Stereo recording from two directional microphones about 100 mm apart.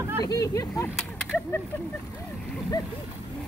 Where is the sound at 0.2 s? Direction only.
35° left (ahead or behind).